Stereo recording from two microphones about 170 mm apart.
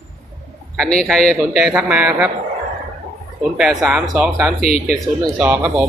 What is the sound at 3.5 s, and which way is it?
Speech, 5° right (ahead or behind).